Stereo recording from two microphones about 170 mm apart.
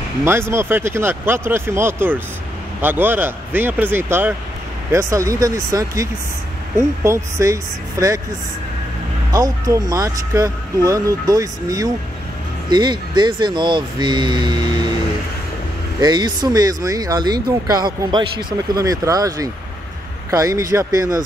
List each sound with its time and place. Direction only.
0.2 s speech: 15° right (ahead or behind)
9.3 s speech: 20° right (ahead or behind)
16.0 s speech: 25° right (ahead or behind)